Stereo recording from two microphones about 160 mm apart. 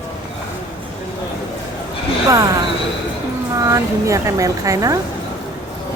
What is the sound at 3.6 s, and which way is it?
A woman's voice, 20° right (ahead or behind).